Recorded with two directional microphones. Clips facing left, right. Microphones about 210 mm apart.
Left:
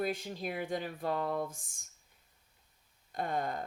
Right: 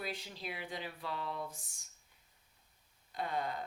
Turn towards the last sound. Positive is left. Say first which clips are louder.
# left 3 dB
turn(degrees=50)  # may be behind; listen again after turning